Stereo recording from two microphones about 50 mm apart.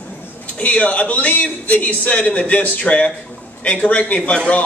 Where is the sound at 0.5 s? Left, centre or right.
Left.